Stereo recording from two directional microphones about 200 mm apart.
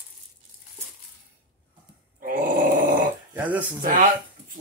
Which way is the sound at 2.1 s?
45° right (ahead or behind).